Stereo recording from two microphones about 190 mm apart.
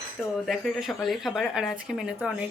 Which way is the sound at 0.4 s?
Centre (ahead or behind).